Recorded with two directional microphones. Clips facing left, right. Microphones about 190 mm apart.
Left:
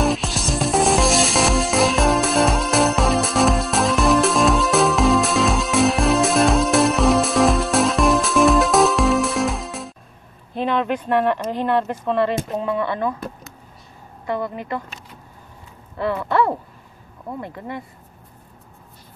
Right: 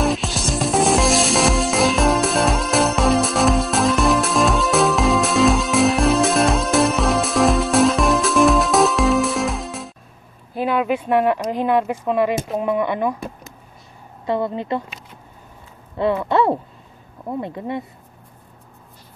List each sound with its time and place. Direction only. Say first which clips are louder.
0.0 s music: even; centre (ahead or behind)
10.5 s speech: right 1 dB; 5° right (ahead or behind)
14.2 s a woman's voice: right 3 dB; 25° right (ahead or behind)
16.0 s a woman's voice: right 2 dB; 20° right (ahead or behind)